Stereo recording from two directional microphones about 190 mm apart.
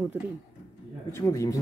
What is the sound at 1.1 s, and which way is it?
Speech, 15° left (ahead or behind).